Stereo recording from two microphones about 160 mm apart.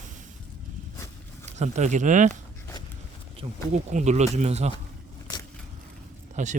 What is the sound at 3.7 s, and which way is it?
Speech, 45° right (ahead or behind).